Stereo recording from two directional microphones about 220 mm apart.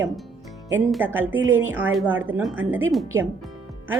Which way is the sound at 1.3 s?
60° right (ahead or behind).